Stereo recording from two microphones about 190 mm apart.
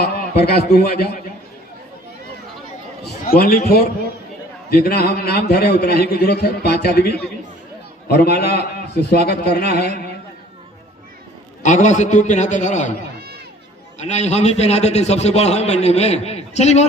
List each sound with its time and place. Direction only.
0.0 s a man's voice: 55° left (ahead or behind)
3.2 s a man's voice: 50° left (ahead or behind)
4.7 s a man's voice: 55° left (ahead or behind)
11.6 s a man's voice: 40° left (ahead or behind)
14.0 s a man's voice: 35° left (ahead or behind)